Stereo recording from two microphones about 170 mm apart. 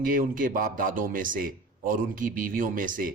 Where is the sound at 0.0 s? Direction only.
55° right (ahead or behind).